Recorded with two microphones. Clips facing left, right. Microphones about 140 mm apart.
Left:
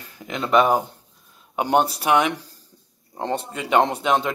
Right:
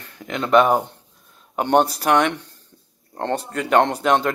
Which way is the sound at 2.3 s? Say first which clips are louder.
Even; 35° left (ahead or behind).